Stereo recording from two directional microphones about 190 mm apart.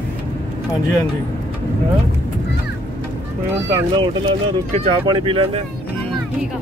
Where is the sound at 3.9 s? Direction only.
30° right (ahead or behind).